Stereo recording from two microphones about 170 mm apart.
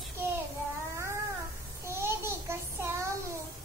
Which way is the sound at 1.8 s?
15° right (ahead or behind).